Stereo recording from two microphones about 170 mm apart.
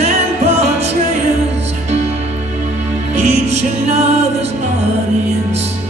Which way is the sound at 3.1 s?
40° right (ahead or behind).